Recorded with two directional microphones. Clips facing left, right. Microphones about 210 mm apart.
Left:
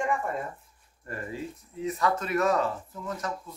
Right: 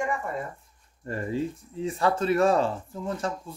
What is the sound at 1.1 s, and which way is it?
Speech, 30° right (ahead or behind).